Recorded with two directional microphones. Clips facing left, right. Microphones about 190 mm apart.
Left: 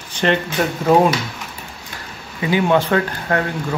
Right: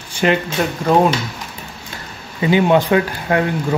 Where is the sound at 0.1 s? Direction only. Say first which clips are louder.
Right 2 dB; 5° right (ahead or behind).